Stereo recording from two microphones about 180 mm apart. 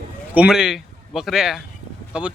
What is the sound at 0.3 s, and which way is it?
A man's voice, 5° right (ahead or behind).